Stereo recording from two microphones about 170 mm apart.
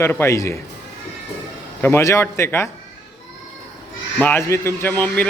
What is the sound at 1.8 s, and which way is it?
Speech, 15° left (ahead or behind).